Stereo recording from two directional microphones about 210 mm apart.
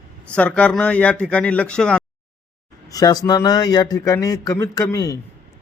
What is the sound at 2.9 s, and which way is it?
Speech, 15° left (ahead or behind).